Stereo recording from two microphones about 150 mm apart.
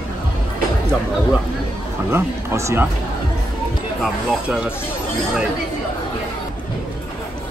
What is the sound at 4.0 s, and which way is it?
Speech, 5° right (ahead or behind).